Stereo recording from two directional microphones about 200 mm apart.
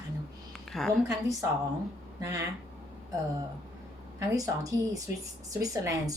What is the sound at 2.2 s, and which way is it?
Speech, 15° right (ahead or behind).